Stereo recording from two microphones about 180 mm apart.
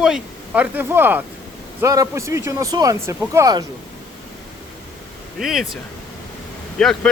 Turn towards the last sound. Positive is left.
turn(degrees=5)  # may be behind; listen again after turning